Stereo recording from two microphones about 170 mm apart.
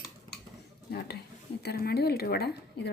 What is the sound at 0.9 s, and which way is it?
Speech, 70° left (ahead or behind).